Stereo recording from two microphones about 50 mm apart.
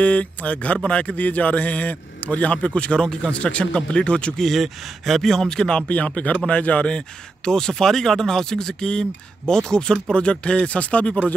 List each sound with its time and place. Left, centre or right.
0.0 s a man's voice: left
4.4 s speech: centre; by 7.0 s left
7.4 s a man's voice: centre; by 11.1 s left